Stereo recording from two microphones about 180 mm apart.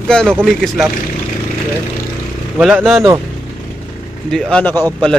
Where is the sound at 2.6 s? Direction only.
5° right (ahead or behind).